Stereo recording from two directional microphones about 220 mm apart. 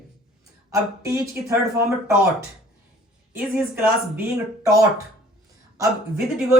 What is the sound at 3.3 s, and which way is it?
Speech, 10° right (ahead or behind).